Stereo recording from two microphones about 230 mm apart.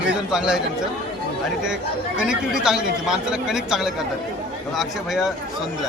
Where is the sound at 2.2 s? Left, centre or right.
Centre.